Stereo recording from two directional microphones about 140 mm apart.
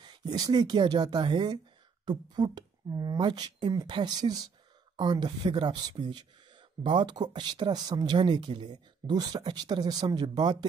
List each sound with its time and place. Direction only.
0.0 s speech: 30° right (ahead or behind)